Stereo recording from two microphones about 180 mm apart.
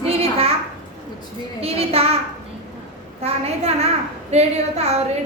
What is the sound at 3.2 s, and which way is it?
A woman's voice, 35° right (ahead or behind).